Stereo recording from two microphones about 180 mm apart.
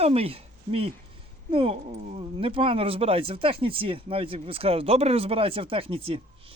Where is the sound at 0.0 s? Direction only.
35° right (ahead or behind).